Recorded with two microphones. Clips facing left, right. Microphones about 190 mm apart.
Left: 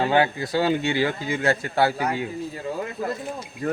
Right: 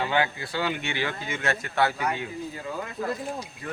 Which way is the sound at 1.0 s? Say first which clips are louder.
Left 6 dB; 35° left (ahead or behind).